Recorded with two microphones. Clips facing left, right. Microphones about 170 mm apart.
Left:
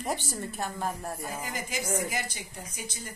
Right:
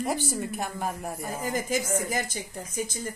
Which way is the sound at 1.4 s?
45° right (ahead or behind).